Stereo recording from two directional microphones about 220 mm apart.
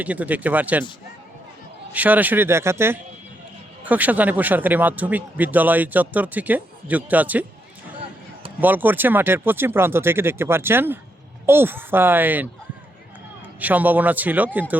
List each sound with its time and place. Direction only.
0.0 s speech: 5° right (ahead or behind)
1.9 s speech: 5° right (ahead or behind)
8.6 s speech: 10° right (ahead or behind)
13.6 s speech: 5° right (ahead or behind)